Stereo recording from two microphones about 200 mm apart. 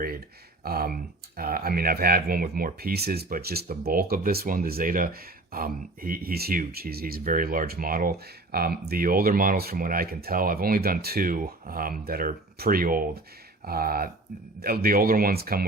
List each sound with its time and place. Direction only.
0.6 s speech: 50° right (ahead or behind)